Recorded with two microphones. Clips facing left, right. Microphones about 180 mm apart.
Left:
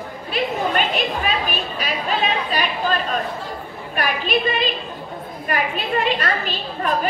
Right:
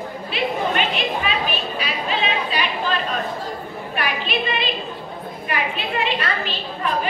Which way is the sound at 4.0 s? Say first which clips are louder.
Left 3 dB; 45° left (ahead or behind).